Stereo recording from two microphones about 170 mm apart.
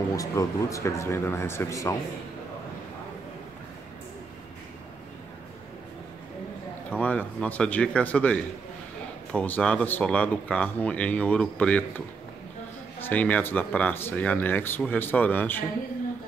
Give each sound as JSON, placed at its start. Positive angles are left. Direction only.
{"t": 0.1, "sound": "speech", "side_deg": 20}
{"t": 6.9, "sound": "speech", "side_deg": 10}
{"t": 13.0, "sound": "speech", "side_deg": 10}